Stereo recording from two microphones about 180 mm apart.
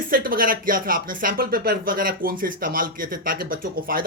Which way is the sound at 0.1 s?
50° right (ahead or behind).